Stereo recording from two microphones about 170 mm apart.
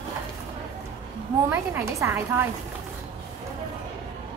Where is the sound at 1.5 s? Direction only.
15° right (ahead or behind).